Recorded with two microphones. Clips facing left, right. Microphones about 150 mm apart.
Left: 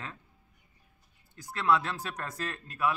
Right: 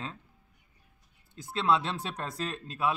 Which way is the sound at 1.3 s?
25° right (ahead or behind).